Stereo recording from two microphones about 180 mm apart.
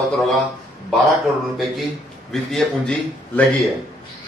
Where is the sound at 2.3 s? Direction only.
5° left (ahead or behind).